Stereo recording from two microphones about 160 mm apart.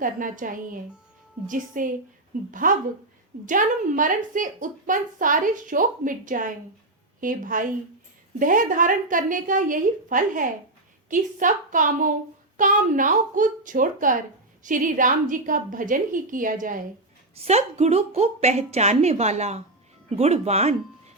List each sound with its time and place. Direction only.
0.0 s a woman's voice: 55° right (ahead or behind)
17.3 s a woman's voice: 40° right (ahead or behind)